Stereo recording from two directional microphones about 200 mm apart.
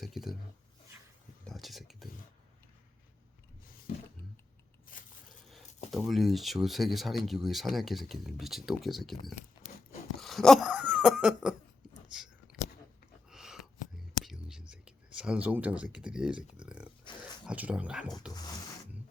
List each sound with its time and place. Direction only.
0.0 s speech: centre (ahead or behind)
1.5 s speech: centre (ahead or behind)
4.9 s biting: 45° left (ahead or behind)
5.9 s speech: centre (ahead or behind)
10.2 s laughter: centre (ahead or behind)
12.1 s a sound: centre (ahead or behind)
13.3 s whispering: centre (ahead or behind)
14.7 s a sound: 5° right (ahead or behind)
17.4 s speech: 5° right (ahead or behind)
18.3 s speech: 20° left (ahead or behind)